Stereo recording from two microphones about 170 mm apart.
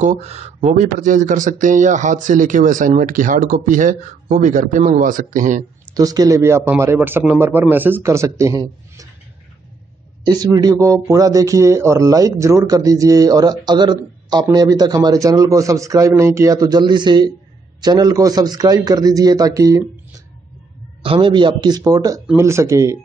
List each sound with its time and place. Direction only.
0.0 s speech: 40° right (ahead or behind)
5.9 s a man's voice: 20° right (ahead or behind)
10.2 s speech: 25° right (ahead or behind)
21.0 s a man's voice: 30° right (ahead or behind)